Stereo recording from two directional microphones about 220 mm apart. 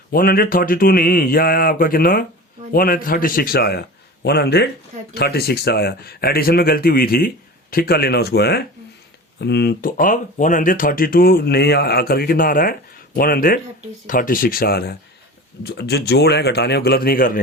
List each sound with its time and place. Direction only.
0.1 s speech: 40° left (ahead or behind)